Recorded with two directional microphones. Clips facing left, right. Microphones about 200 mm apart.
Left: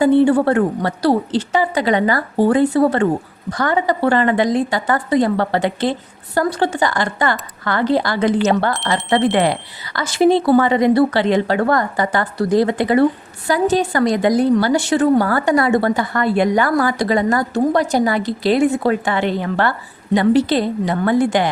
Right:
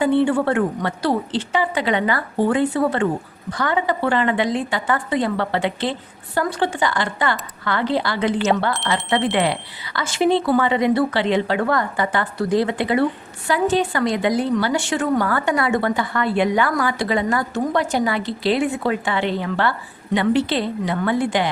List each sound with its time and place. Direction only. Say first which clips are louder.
0.0 s a woman's voice: left 5 dB; 40° left (ahead or behind)